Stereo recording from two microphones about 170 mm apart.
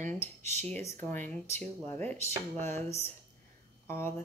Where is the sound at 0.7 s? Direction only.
10° left (ahead or behind).